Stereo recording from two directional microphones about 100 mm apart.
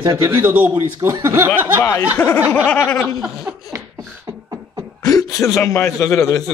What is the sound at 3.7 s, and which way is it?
Beatboxing, 35° right (ahead or behind).